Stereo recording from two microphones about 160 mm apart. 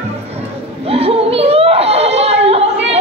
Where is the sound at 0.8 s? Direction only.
35° right (ahead or behind).